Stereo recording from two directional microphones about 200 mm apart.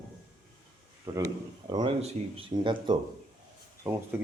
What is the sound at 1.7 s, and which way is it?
Speech, 25° right (ahead or behind).